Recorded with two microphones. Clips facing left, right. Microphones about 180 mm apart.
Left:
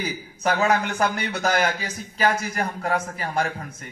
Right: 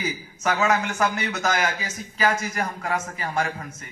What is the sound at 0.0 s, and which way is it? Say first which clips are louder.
A man's voice: left 1 dB; 35° left (ahead or behind).